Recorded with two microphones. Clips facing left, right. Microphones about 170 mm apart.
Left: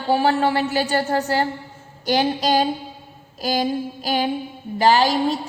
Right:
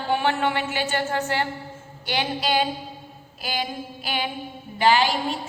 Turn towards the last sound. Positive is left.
turn(degrees=40)  # may be behind; listen again after turning